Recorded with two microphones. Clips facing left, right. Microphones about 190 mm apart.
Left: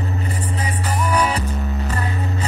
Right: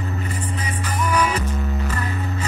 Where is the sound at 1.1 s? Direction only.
35° left (ahead or behind).